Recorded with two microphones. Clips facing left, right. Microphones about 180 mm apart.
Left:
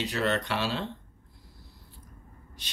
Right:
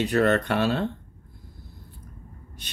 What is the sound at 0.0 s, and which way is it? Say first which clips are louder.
Speech: right 7 dB; 55° right (ahead or behind).